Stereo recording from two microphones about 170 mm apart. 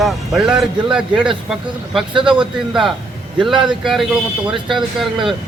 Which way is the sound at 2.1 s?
30° right (ahead or behind).